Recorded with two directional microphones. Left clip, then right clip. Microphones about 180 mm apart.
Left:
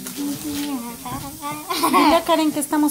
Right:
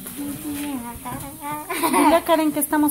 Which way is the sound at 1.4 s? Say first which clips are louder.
Left 2 dB; 10° right (ahead or behind).